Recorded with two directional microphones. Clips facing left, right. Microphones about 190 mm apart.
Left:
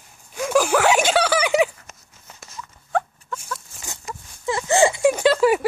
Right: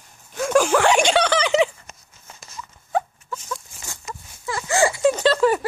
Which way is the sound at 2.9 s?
5° right (ahead or behind).